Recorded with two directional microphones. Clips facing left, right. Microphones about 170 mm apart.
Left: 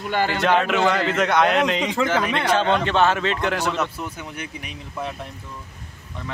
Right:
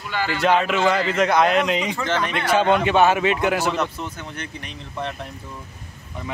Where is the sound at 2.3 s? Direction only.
10° right (ahead or behind).